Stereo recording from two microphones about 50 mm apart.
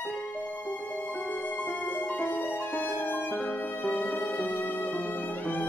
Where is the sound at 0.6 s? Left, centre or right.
Left.